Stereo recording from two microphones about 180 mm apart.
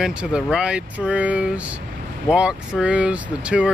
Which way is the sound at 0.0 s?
5° right (ahead or behind).